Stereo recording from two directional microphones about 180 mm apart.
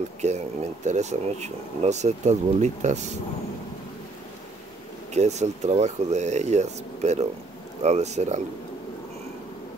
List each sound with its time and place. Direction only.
0.2 s speech: 40° right (ahead or behind)
5.1 s speech: 40° right (ahead or behind)